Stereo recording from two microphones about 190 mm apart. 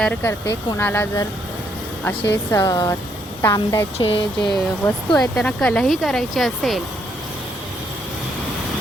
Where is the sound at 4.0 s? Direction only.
30° left (ahead or behind).